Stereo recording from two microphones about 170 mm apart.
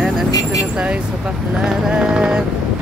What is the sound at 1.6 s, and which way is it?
Music, 5° right (ahead or behind).